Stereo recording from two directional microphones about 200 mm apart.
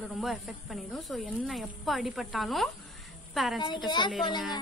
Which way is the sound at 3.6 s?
25° left (ahead or behind).